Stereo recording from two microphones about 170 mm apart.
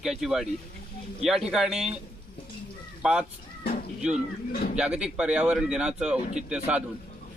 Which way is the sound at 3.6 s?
65° left (ahead or behind).